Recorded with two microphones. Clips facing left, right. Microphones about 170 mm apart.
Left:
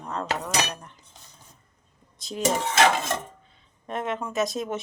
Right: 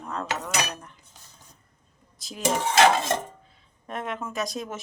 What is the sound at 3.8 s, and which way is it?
Speech, centre (ahead or behind).